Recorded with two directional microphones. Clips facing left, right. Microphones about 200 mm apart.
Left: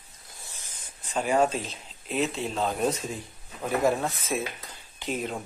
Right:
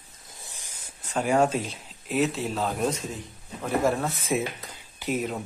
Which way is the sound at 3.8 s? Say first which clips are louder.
Left 1 dB; centre (ahead or behind).